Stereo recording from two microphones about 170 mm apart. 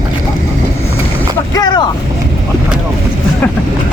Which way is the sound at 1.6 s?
25° left (ahead or behind).